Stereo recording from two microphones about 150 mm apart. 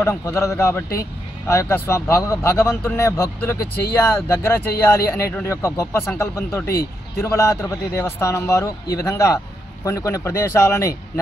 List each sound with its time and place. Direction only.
0.0 s a man's voice: 20° left (ahead or behind)